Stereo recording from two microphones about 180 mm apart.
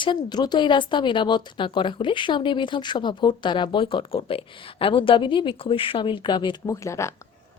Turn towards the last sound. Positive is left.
turn(degrees=15)  # may be behind; listen again after turning